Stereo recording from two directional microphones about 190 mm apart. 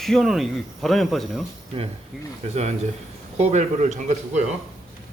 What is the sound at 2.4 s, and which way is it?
A man's voice, 35° right (ahead or behind).